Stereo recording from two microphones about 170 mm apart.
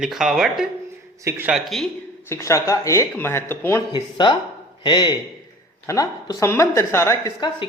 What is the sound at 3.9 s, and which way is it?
A woman's voice, 25° left (ahead or behind).